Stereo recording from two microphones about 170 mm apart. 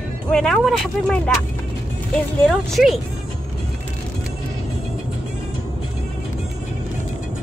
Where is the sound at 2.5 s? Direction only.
Centre (ahead or behind).